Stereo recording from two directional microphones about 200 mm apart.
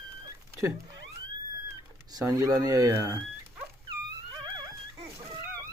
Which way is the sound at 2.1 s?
20° right (ahead or behind).